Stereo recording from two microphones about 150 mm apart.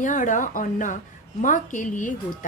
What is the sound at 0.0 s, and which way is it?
A woman's voice, 60° left (ahead or behind).